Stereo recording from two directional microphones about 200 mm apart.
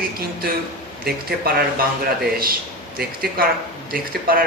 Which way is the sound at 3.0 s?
50° right (ahead or behind).